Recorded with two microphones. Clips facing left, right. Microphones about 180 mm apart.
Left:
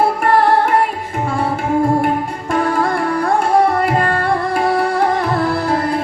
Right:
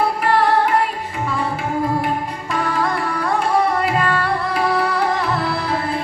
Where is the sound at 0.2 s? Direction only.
50° left (ahead or behind).